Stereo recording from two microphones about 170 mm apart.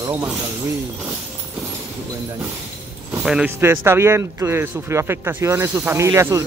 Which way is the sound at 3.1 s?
10° right (ahead or behind).